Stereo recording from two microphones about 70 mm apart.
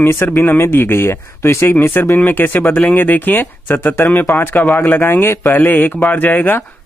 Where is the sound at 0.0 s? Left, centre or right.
Left.